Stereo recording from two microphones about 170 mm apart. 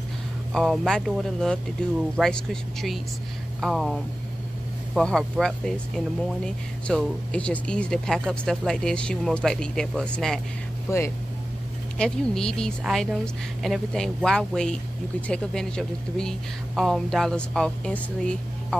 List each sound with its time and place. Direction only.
0.5 s speech: centre (ahead or behind)
10.9 s speech: 15° left (ahead or behind)
12.0 s speech: 5° left (ahead or behind)